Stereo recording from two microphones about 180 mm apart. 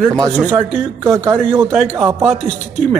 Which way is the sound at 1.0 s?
15° right (ahead or behind).